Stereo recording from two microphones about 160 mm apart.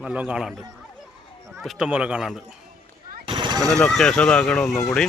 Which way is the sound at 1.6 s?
5° right (ahead or behind).